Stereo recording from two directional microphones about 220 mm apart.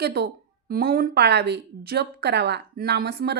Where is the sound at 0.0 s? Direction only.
45° right (ahead or behind).